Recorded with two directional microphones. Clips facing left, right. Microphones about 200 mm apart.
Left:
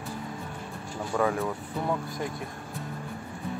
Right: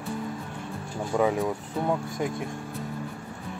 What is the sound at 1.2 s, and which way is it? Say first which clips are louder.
Speech: right 3 dB; 15° right (ahead or behind).